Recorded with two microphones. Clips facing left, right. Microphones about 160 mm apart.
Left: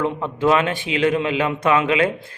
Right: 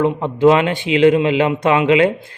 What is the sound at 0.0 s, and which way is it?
A man's voice, 20° right (ahead or behind).